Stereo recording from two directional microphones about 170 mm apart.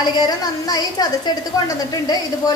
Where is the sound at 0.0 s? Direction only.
25° left (ahead or behind).